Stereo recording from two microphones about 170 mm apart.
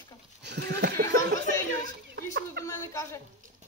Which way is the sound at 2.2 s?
75° right (ahead or behind).